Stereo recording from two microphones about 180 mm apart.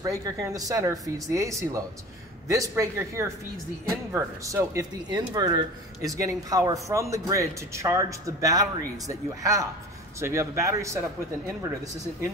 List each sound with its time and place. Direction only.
0.0 s speech: 20° right (ahead or behind)